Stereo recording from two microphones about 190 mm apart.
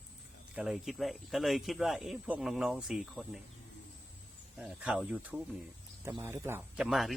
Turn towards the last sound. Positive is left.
turn(degrees=0)  # may be behind; listen again after turning